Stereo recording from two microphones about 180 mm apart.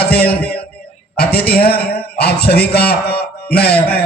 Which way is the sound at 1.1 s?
60° left (ahead or behind).